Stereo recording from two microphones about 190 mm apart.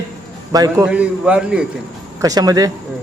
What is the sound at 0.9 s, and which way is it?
Speech, 5° right (ahead or behind).